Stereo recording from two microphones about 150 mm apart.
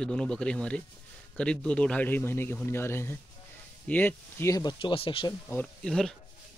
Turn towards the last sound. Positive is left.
turn(degrees=5)  # may be behind; listen again after turning